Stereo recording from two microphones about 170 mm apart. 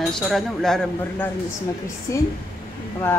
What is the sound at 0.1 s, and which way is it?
A woman's voice, centre (ahead or behind).